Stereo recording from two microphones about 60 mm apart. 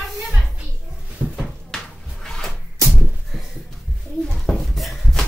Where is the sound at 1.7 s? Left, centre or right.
Centre.